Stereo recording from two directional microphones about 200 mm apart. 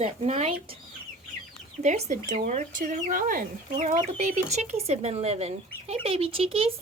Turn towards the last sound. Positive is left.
turn(degrees=-30)  # may be behind; listen again after turning